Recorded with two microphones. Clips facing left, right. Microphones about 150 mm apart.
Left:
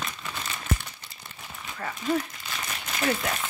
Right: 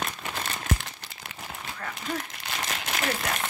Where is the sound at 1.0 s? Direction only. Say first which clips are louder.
Right 4 dB; 85° right.